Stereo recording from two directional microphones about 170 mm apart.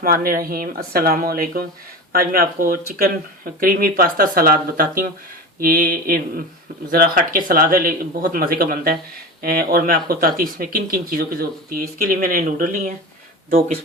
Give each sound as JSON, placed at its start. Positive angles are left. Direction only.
{"t": 0.0, "sound": "speech", "side_deg": -60}